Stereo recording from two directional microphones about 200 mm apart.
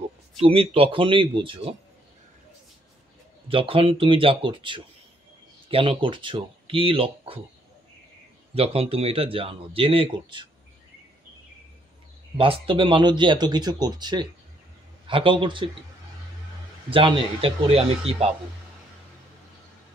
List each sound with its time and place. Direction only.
0.4 s speech: 30° right (ahead or behind)
3.4 s speech: 25° right (ahead or behind)
8.5 s speech: 30° right (ahead or behind)
12.4 s speech: 25° right (ahead or behind)
16.9 s speech: 25° right (ahead or behind)